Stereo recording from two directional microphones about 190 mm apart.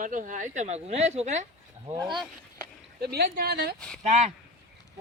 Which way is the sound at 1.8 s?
25° right (ahead or behind).